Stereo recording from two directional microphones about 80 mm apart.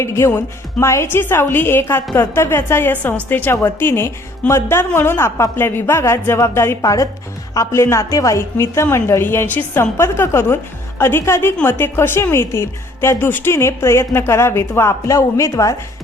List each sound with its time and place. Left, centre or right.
0.0 s a woman's voice: left